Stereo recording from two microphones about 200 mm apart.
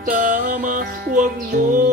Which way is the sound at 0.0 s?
45° right (ahead or behind).